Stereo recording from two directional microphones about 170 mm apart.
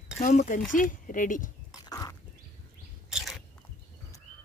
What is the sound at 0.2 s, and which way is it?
Speech, 45° left (ahead or behind).